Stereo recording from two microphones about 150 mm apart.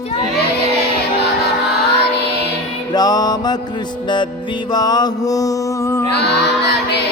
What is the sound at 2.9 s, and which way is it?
Music, 25° left (ahead or behind).